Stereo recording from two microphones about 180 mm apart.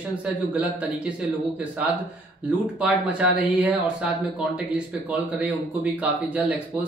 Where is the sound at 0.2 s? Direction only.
5° right (ahead or behind).